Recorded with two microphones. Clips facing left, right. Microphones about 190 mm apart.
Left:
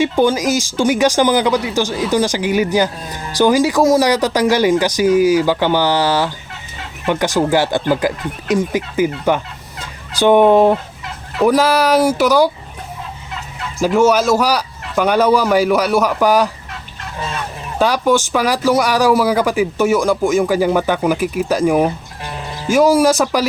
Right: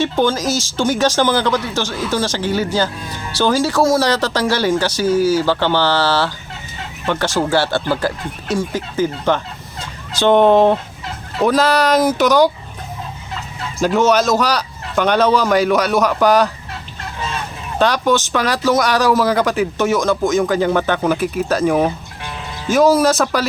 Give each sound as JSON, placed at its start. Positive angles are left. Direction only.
{"t": 0.0, "sound": "speech", "side_deg": 15}
{"t": 13.8, "sound": "speech", "side_deg": 10}
{"t": 17.7, "sound": "speech", "side_deg": 10}